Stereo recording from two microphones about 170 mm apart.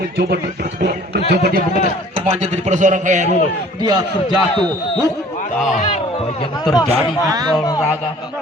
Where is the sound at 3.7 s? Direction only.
25° right (ahead or behind).